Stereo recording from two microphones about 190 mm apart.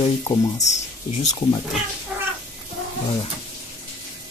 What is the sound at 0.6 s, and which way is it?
Speech, 35° left (ahead or behind).